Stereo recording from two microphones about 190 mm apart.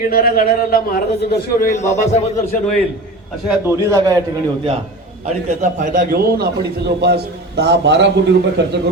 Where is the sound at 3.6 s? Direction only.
15° right (ahead or behind).